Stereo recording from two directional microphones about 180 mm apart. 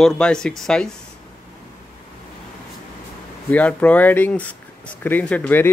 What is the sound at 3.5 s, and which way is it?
Speech, 10° left (ahead or behind).